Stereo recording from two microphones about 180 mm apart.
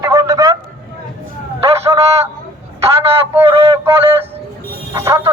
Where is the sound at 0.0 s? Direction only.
20° right (ahead or behind).